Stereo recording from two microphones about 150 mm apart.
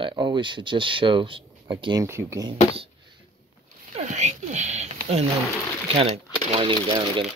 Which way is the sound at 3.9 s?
50° right (ahead or behind).